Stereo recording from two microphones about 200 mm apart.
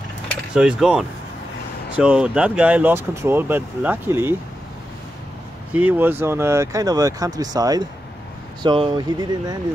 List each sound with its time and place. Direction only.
0.6 s speech: 5° right (ahead or behind)
5.7 s speech: 5° right (ahead or behind)